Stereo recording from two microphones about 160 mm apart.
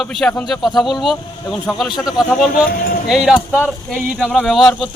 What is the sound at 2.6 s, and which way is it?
Speech, 65° left (ahead or behind).